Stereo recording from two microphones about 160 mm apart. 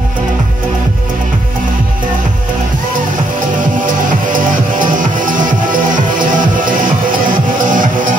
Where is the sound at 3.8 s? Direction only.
55° right (ahead or behind).